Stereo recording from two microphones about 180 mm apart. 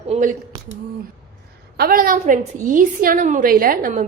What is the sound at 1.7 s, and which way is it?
A woman's voice, 55° right (ahead or behind).